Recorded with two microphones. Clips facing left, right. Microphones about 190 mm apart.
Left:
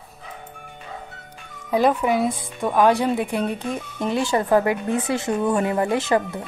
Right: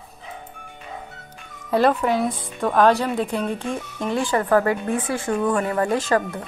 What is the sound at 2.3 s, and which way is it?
Speech, 15° left (ahead or behind).